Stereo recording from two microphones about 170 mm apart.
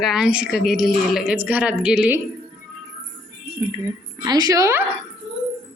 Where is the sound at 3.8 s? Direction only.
20° right (ahead or behind).